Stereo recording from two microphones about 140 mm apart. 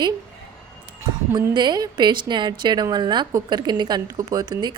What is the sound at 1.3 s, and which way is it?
A woman's voice, 30° right (ahead or behind).